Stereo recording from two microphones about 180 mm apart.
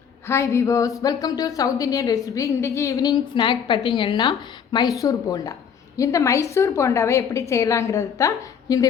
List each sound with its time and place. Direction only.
0.3 s a woman's voice: 15° left (ahead or behind)